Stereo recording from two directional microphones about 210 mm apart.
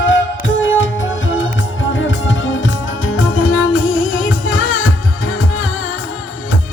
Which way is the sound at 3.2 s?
75° left (ahead or behind).